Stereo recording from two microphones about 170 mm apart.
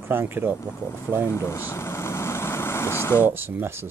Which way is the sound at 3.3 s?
10° right (ahead or behind).